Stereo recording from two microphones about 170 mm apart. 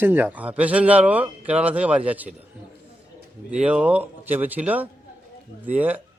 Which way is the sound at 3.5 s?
5° right (ahead or behind).